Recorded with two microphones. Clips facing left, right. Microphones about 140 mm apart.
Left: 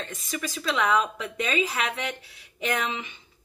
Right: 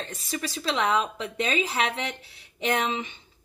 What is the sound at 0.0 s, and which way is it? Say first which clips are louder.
Speech: even; 30° right (ahead or behind).